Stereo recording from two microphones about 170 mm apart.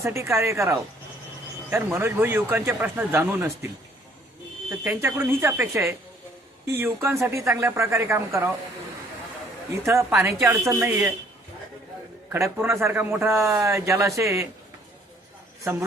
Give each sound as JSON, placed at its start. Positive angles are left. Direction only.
{"t": 0.0, "sound": "speech", "side_deg": -15}
{"t": 4.7, "sound": "speech", "side_deg": -10}
{"t": 9.8, "sound": "speech", "side_deg": -15}
{"t": 12.3, "sound": "speech", "side_deg": -15}